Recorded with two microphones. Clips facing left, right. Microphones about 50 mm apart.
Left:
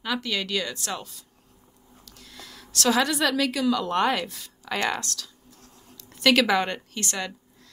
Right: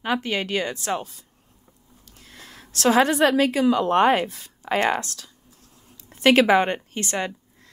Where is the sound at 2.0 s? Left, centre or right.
Right.